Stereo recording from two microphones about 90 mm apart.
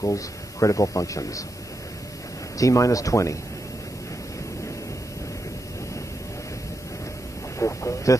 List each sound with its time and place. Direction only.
0.0 s a man's voice: 40° left (ahead or behind)
2.5 s a man's voice: 40° left (ahead or behind)
7.5 s speech: 35° left (ahead or behind)